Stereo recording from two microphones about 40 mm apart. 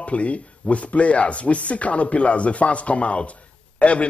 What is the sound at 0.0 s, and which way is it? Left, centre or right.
A man's voice, left.